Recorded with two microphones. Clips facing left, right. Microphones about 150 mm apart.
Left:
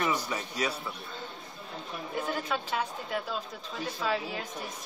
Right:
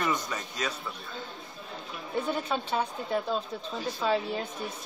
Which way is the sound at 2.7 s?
35° right (ahead or behind).